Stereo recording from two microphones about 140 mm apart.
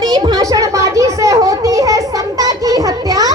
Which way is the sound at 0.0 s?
25° right (ahead or behind).